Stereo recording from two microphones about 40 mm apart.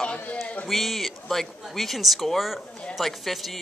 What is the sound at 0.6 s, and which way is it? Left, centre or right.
A woman's voice, centre.